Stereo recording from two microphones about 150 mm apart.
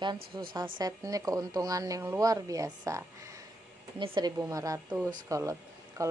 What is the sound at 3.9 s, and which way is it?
Speech, 30° right (ahead or behind).